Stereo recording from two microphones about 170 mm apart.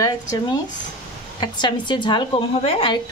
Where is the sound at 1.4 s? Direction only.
25° left (ahead or behind).